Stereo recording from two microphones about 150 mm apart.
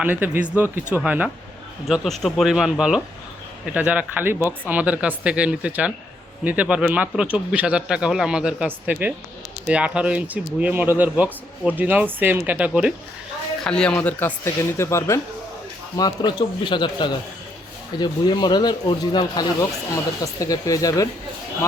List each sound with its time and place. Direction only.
0.0 s speech: 10° right (ahead or behind)
13.7 s speech: 5° left (ahead or behind); by 21.1 s 25° left (ahead or behind)